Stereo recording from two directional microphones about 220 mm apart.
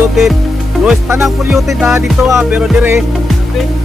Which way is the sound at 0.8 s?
10° right (ahead or behind).